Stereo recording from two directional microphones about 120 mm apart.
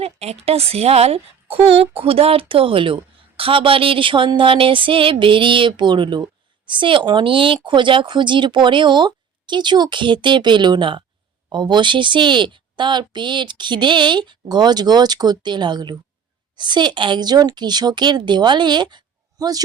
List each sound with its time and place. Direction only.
0.0 s a woman's voice: 60° right (ahead or behind); by 19.6 s 30° right (ahead or behind)